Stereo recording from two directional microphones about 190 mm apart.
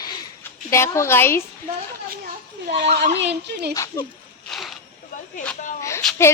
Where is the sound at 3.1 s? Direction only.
65° right (ahead or behind).